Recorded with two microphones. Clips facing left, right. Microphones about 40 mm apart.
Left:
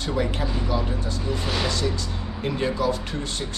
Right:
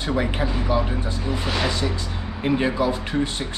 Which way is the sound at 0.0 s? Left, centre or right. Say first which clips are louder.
Right 2 dB; centre.